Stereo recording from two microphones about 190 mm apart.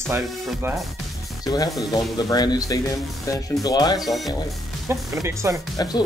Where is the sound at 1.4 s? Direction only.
20° left (ahead or behind).